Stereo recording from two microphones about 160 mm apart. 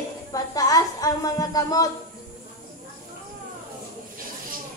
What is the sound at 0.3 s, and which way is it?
A woman's voice, 25° left (ahead or behind).